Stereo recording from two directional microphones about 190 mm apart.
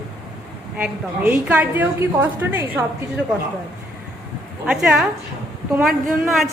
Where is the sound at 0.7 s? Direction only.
10° right (ahead or behind).